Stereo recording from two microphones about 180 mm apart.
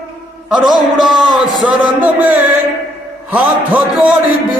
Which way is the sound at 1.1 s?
Centre (ahead or behind).